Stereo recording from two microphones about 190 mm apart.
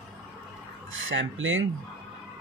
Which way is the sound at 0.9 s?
85° right.